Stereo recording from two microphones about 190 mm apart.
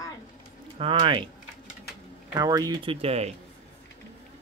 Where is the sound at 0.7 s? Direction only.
25° right (ahead or behind).